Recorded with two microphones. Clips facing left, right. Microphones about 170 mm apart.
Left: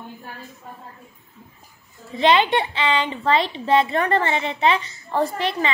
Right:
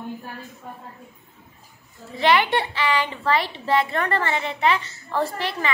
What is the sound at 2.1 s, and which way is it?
A woman's voice, 20° left (ahead or behind).